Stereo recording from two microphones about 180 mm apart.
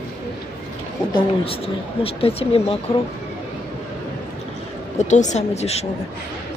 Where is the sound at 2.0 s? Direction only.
30° left (ahead or behind).